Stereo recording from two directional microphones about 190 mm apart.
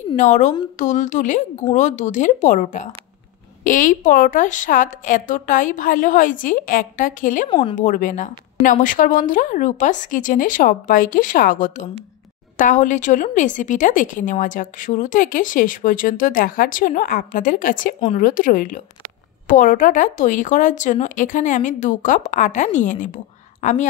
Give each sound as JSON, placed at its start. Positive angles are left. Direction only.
{"t": 0.1, "sound": "a woman's voice", "side_deg": 40}
{"t": 7.4, "sound": "speech", "side_deg": 25}
{"t": 7.7, "sound": "a woman's voice", "side_deg": 45}